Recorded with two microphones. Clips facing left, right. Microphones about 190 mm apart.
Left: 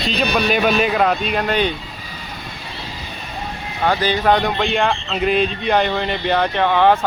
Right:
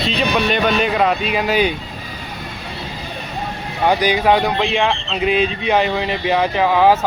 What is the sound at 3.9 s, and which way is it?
Speech, 15° right (ahead or behind).